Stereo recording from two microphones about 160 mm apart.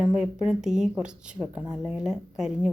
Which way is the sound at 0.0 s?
5° right (ahead or behind).